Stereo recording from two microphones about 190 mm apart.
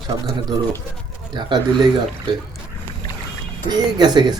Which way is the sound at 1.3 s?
25° right (ahead or behind).